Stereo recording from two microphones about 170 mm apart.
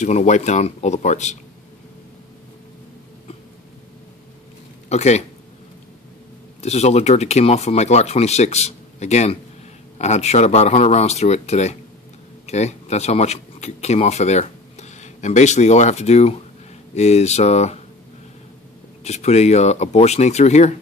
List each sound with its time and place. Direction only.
0.0 s speech: 45° left (ahead or behind)
4.8 s speech: 40° left (ahead or behind)
6.6 s speech: 40° left (ahead or behind)
19.0 s speech: 40° left (ahead or behind)